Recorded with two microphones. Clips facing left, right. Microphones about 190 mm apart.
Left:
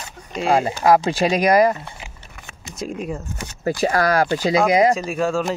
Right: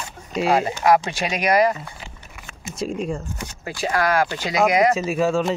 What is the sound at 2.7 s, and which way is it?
Speech, centre (ahead or behind).